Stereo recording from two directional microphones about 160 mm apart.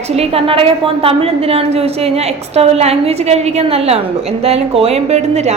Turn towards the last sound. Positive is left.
turn(degrees=-40)  # may be behind; listen again after turning